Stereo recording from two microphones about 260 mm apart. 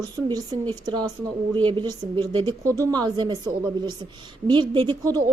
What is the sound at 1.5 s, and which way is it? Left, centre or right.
A woman's voice, centre.